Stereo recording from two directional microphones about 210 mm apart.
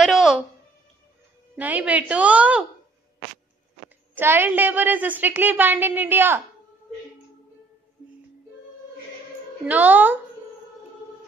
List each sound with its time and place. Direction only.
0.0 s a sound: centre (ahead or behind)
1.6 s a woman's voice: 5° right (ahead or behind)
4.1 s a woman's voice: 10° right (ahead or behind)
9.7 s a woman's voice: 10° right (ahead or behind)